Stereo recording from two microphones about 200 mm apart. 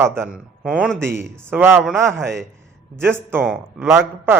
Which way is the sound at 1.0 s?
10° right (ahead or behind).